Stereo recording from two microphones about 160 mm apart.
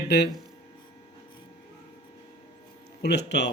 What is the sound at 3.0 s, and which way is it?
Speech, 90° left.